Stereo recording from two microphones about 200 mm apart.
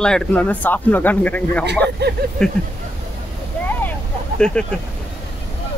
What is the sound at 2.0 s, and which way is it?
Speech, 55° right (ahead or behind).